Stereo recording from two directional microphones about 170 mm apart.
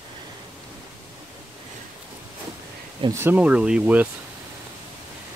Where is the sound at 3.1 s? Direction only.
15° right (ahead or behind).